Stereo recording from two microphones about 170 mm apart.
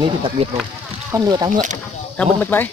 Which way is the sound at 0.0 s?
30° right (ahead or behind).